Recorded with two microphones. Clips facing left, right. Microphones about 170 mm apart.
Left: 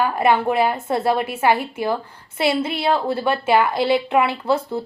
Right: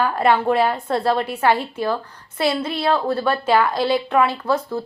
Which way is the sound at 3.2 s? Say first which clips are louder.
Even; 5° left (ahead or behind).